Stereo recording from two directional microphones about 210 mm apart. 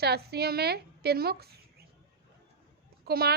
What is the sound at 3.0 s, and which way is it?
Speech, 45° right (ahead or behind).